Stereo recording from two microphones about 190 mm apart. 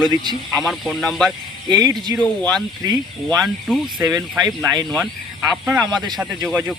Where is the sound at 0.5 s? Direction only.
Centre (ahead or behind).